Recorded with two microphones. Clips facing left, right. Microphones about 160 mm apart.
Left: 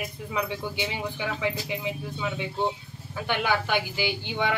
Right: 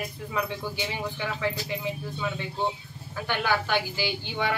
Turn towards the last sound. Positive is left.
turn(degrees=20)  # may be behind; listen again after turning